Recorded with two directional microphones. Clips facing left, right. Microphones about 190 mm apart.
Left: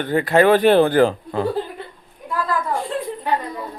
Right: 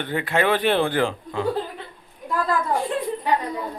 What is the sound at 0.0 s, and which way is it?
A man's voice, 40° left (ahead or behind).